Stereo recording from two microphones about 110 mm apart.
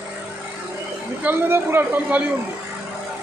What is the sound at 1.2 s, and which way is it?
Speech, 20° right (ahead or behind).